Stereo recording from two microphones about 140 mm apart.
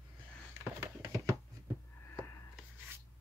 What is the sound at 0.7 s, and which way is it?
Music, 20° right (ahead or behind).